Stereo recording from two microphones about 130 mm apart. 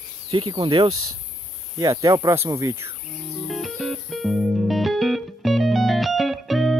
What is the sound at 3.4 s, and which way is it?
Music, centre (ahead or behind).